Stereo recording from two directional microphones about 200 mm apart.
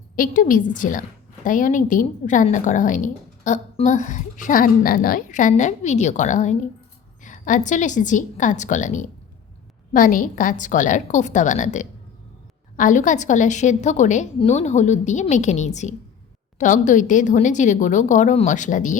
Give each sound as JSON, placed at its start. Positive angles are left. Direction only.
{"t": 0.2, "sound": "a woman's voice", "side_deg": 45}